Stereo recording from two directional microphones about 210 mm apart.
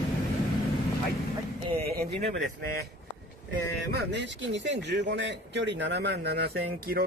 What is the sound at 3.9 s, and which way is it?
A man's voice, 55° right (ahead or behind).